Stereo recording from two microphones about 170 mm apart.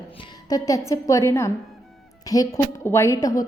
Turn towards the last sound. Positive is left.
turn(degrees=20)  # may be behind; listen again after turning